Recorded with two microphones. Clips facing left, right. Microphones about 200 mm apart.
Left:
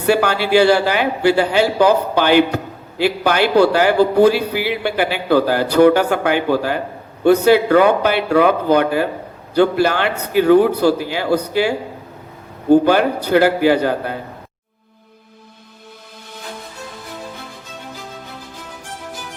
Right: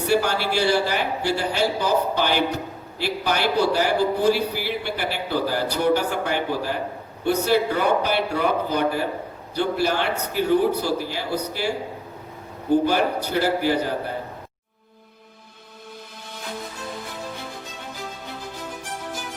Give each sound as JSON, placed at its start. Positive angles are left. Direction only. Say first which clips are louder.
{"t": 0.1, "sound": "a man's voice", "louder": "left 8 dB", "side_deg": 70}
{"t": 12.7, "sound": "a man's voice", "louder": "left 7 dB", "side_deg": 70}